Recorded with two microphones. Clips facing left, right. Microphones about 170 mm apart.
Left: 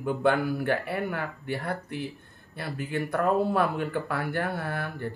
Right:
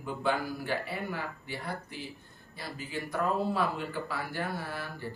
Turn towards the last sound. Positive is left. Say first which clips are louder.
# left 6 dB
turn(degrees=60)  # may be behind; listen again after turning